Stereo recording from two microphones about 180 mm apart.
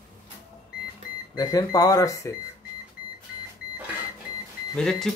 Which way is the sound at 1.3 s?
20° left (ahead or behind).